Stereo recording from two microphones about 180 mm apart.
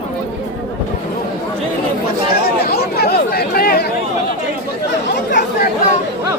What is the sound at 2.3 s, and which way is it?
Chatter, 60° left (ahead or behind).